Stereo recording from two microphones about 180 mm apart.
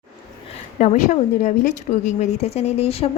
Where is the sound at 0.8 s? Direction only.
40° left (ahead or behind).